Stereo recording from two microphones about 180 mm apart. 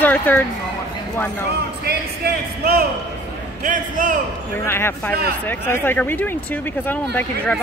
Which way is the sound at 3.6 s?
45° right (ahead or behind).